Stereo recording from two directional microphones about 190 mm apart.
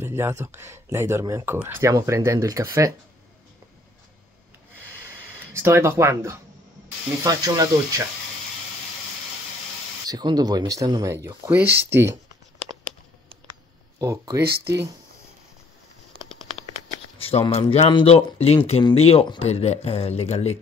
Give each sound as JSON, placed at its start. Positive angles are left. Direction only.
{"t": 0.0, "sound": "speech", "side_deg": -10}
{"t": 5.5, "sound": "speech", "side_deg": -15}
{"t": 10.0, "sound": "speech", "side_deg": -20}
{"t": 11.7, "sound": "speech", "side_deg": -60}
{"t": 13.9, "sound": "speech", "side_deg": -20}
{"t": 14.4, "sound": "speech", "side_deg": -55}
{"t": 17.2, "sound": "speech", "side_deg": 30}